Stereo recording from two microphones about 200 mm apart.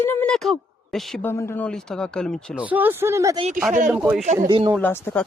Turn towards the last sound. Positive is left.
turn(degrees=10)  # may be behind; listen again after turning